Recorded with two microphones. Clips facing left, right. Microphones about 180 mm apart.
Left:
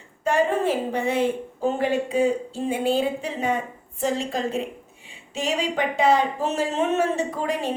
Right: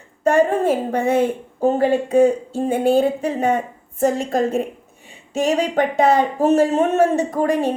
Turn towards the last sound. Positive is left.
turn(degrees=-45)  # may be behind; listen again after turning